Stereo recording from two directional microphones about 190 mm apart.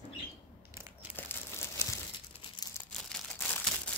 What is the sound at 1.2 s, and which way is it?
Crumpling, 10° left (ahead or behind).